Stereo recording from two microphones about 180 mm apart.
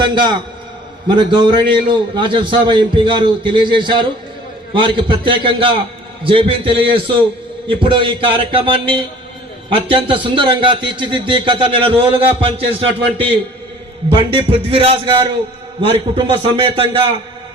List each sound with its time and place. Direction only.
0.0 s a man's voice: 25° right (ahead or behind)